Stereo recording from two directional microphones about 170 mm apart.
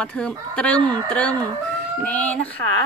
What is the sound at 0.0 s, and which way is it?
Speech, 5° left (ahead or behind).